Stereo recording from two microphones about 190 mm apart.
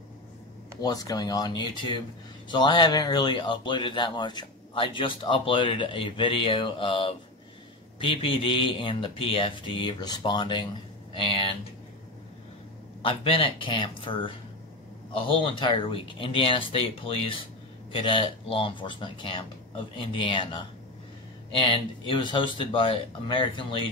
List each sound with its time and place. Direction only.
0.7 s speech: 20° left (ahead or behind)
13.0 s speech: 30° left (ahead or behind)